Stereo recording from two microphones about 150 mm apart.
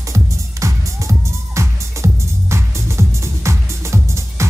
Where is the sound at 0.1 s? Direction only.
20° right (ahead or behind).